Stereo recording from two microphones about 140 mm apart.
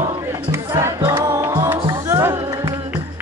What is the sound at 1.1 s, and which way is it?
Music, 25° right (ahead or behind).